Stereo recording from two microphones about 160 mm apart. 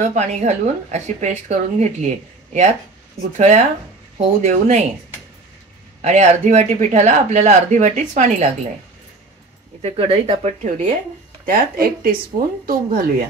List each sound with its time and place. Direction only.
0.0 s speech: 50° right (ahead or behind)
3.3 s speech: 45° right (ahead or behind)
6.0 s speech: 45° right (ahead or behind)
9.8 s speech: 35° right (ahead or behind)
11.4 s speech: 60° right (ahead or behind)